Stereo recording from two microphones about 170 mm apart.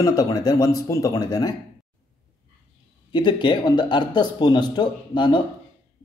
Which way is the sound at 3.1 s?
25° left (ahead or behind).